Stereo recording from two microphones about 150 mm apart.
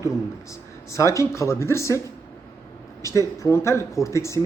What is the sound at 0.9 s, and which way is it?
Speech, 20° left (ahead or behind).